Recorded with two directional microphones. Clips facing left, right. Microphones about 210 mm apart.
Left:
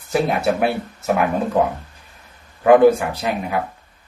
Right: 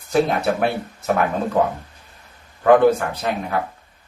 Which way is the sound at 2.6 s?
10° left (ahead or behind).